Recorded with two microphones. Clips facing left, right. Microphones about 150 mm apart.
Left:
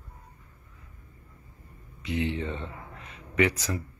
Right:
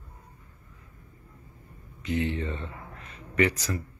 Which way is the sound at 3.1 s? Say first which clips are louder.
Even; 10° left (ahead or behind).